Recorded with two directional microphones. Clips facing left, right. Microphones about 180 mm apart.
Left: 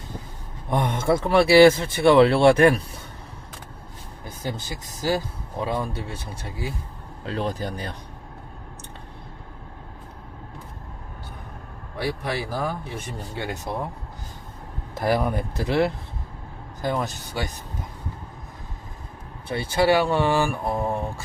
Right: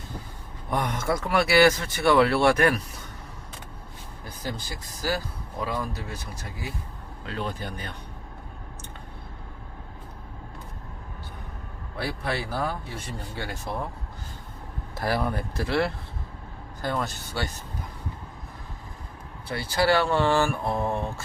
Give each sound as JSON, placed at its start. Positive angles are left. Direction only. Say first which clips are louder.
{"t": 0.7, "sound": "speech", "louder": "left 5 dB", "side_deg": 25}
{"t": 4.4, "sound": "speech", "louder": "left 3 dB", "side_deg": 20}
{"t": 12.2, "sound": "speech", "louder": "left 1 dB", "side_deg": 15}
{"t": 14.9, "sound": "speech", "louder": "left 4 dB", "side_deg": 20}
{"t": 19.5, "sound": "speech", "louder": "left 3 dB", "side_deg": 20}